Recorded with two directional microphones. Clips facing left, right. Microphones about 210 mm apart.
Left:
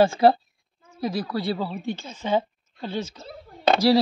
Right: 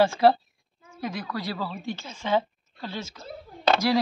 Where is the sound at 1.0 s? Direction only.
35° left (ahead or behind).